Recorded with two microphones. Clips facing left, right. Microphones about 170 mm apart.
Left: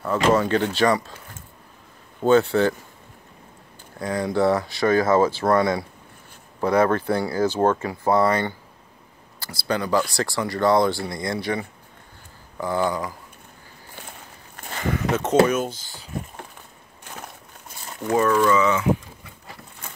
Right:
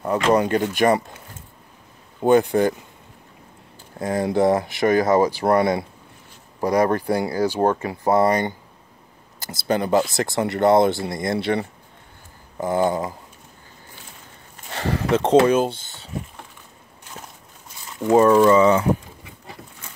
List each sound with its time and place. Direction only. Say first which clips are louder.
0.0 s speech: right 1 dB; 15° right (ahead or behind)
2.2 s speech: right 1 dB; 15° right (ahead or behind)
4.0 s speech: right 2 dB; 25° right (ahead or behind)
11.5 s speech: right 4 dB; 35° right (ahead or behind)
12.5 s speech: right 3 dB; 20° right (ahead or behind)
14.8 s speech: right 3 dB; 30° right (ahead or behind)
18.1 s speech: right 5 dB; 30° right (ahead or behind)